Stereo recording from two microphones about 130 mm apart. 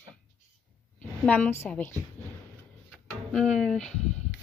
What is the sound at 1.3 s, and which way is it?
Speech, 15° left (ahead or behind).